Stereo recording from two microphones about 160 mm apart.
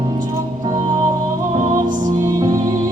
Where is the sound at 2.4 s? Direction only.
20° right (ahead or behind).